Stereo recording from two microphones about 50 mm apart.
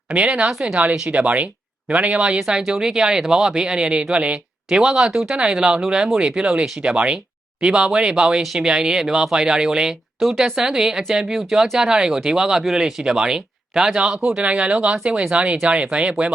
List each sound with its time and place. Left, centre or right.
0.1 s speech: right